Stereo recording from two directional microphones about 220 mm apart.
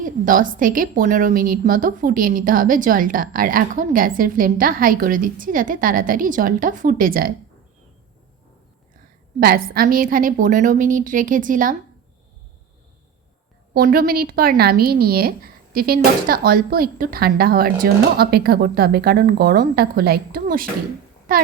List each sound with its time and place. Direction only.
0.0 s a woman's voice: 40° right (ahead or behind)
9.4 s a woman's voice: 40° right (ahead or behind)
13.7 s speech: 40° right (ahead or behind)